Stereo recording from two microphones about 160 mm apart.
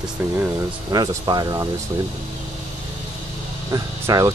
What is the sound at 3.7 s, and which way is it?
Speech, 20° right (ahead or behind).